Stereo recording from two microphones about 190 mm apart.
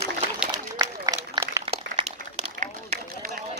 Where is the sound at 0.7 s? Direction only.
20° right (ahead or behind).